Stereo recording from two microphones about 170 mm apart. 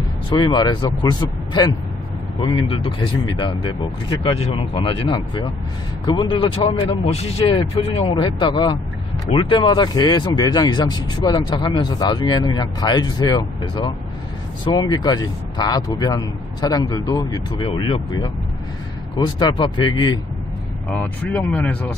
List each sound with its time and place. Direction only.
0.3 s speech: 25° left (ahead or behind)
20.9 s speech: 10° left (ahead or behind)